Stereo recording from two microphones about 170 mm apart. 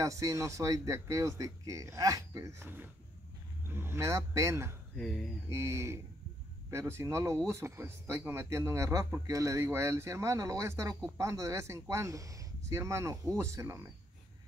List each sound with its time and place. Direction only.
0.0 s speech: 20° right (ahead or behind)
4.9 s speech: centre (ahead or behind)
5.5 s speech: 15° right (ahead or behind)